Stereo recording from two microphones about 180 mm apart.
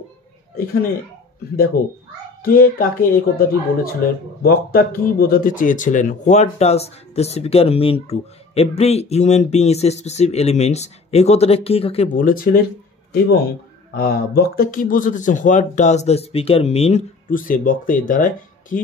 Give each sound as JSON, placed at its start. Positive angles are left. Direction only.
{"t": 1.8, "sound": "speech", "side_deg": 55}
{"t": 12.1, "sound": "speech", "side_deg": 50}
{"t": 13.9, "sound": "speech", "side_deg": 55}
{"t": 17.3, "sound": "speech", "side_deg": 50}